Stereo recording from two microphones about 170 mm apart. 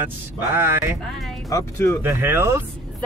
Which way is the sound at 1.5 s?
15° left (ahead or behind).